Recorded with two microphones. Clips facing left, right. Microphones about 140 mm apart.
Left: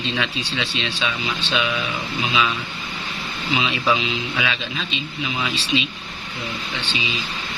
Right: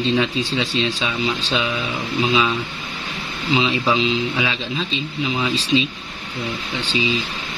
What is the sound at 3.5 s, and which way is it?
Speech, 30° right (ahead or behind).